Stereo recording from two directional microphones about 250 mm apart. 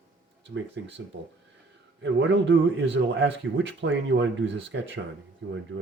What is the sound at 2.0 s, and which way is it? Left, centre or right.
Speech, right.